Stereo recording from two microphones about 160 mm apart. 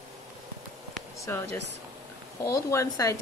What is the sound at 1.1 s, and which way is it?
Speech, 20° left (ahead or behind).